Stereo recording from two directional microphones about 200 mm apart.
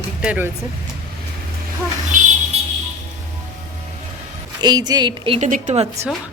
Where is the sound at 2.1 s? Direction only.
40° right (ahead or behind).